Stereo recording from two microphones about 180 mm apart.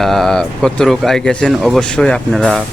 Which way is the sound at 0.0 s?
Centre (ahead or behind).